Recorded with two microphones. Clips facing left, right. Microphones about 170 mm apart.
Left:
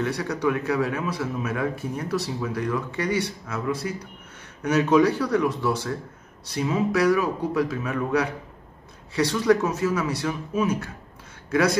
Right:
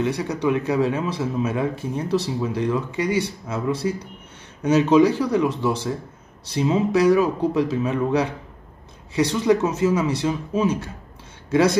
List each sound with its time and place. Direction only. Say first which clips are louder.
0.0 s speech: right 2 dB; 20° right (ahead or behind)